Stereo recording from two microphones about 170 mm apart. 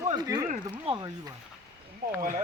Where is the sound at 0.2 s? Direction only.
25° right (ahead or behind).